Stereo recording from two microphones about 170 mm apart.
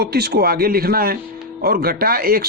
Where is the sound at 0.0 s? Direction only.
70° right (ahead or behind).